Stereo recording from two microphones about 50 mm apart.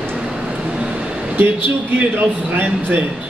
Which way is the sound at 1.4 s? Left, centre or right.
Right.